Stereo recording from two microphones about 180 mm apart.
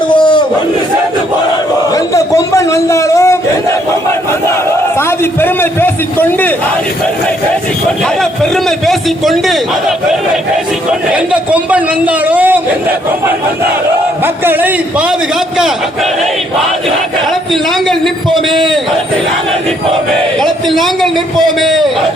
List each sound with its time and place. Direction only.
0.1 s crowd: 25° left (ahead or behind)
1.9 s a sound: 20° left (ahead or behind)
4.9 s a sound: 10° left (ahead or behind)
8.2 s a man's voice: centre (ahead or behind)
11.1 s a man's voice: 5° right (ahead or behind)
14.4 s a man's voice: 10° right (ahead or behind)
17.5 s a man's voice: centre (ahead or behind)
18.4 s a man's voice: 25° right (ahead or behind)
20.4 s a man's voice: centre (ahead or behind)